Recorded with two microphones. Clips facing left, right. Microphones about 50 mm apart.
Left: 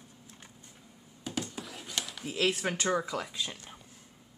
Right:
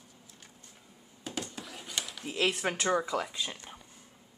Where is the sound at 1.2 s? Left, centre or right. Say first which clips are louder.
Left 2 dB; centre.